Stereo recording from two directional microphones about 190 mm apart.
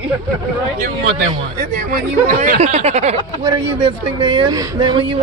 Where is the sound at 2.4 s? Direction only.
35° right (ahead or behind).